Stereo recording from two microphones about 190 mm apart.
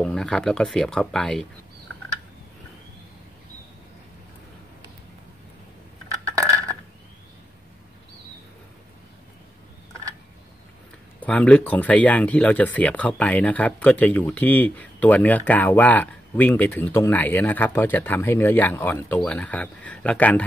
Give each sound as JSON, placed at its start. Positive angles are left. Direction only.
{"t": 0.0, "sound": "speech", "side_deg": 0}
{"t": 6.2, "sound": "a sound", "side_deg": -15}
{"t": 11.1, "sound": "speech", "side_deg": 5}